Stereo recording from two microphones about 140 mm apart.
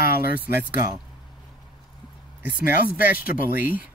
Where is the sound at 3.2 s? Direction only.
90° left.